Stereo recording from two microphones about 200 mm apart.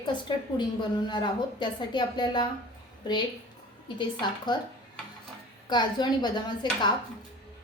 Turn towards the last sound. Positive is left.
turn(degrees=20)  # may be behind; listen again after turning